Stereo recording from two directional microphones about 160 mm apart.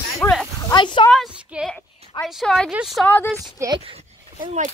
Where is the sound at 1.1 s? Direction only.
Centre (ahead or behind).